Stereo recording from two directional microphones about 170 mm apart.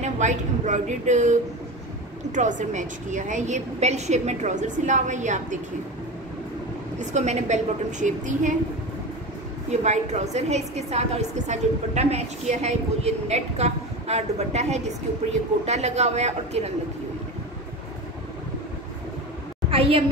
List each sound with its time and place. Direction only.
0.0 s a woman's voice: 45° right (ahead or behind)
7.0 s a woman's voice: 45° right (ahead or behind)
9.7 s a woman's voice: 40° right (ahead or behind)